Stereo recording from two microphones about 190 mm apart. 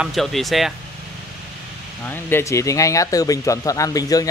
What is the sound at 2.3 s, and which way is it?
Speech, 15° left (ahead or behind).